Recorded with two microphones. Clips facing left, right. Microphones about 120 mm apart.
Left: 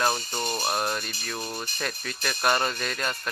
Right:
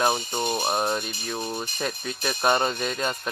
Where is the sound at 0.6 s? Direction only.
20° right (ahead or behind).